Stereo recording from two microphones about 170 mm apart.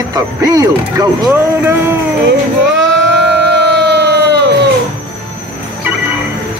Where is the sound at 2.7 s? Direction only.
90° right.